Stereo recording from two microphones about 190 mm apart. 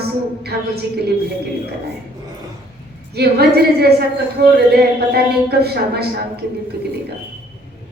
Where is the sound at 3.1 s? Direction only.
55° right (ahead or behind).